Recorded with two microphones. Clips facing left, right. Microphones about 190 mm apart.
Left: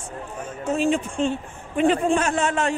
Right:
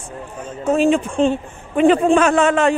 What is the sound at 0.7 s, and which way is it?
A man's voice, 90° right.